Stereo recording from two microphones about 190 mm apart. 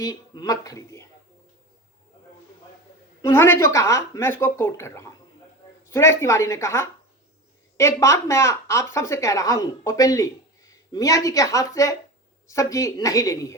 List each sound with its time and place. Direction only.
0.0 s speech: 20° left (ahead or behind)
3.2 s speech: 15° left (ahead or behind)